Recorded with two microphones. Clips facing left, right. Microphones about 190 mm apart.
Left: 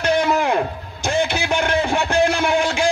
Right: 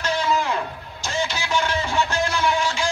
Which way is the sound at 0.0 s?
60° left (ahead or behind).